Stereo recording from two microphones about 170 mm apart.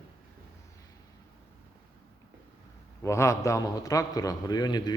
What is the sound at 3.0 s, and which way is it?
Speech, 15° left (ahead or behind).